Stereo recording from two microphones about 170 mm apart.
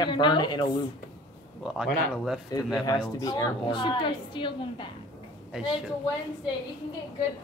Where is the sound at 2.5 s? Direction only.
25° left (ahead or behind).